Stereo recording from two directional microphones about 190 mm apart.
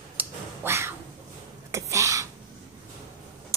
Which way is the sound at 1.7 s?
15° right (ahead or behind).